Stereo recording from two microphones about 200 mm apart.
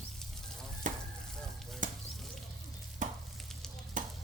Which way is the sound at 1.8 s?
40° right (ahead or behind).